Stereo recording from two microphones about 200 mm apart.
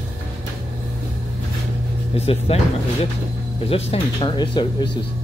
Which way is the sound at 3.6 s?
30° left (ahead or behind).